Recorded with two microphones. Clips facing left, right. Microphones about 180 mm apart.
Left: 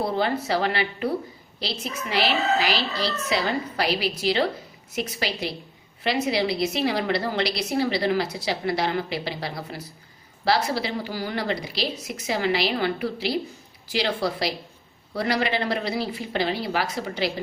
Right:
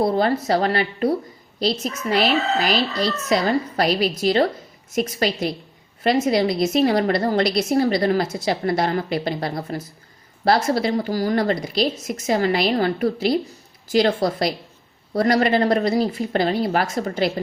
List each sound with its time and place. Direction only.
0.0 s a woman's voice: 40° right (ahead or behind)